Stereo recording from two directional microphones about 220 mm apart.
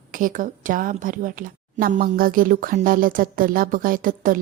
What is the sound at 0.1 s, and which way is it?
A woman's voice, 40° right (ahead or behind).